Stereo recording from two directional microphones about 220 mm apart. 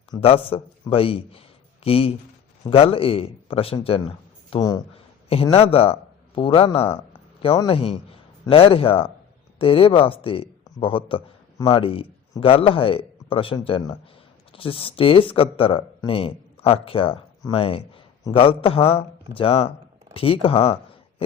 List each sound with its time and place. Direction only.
0.1 s a man's voice: 25° left (ahead or behind)